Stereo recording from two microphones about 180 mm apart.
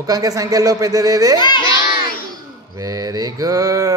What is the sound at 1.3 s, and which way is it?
Speech, 25° left (ahead or behind).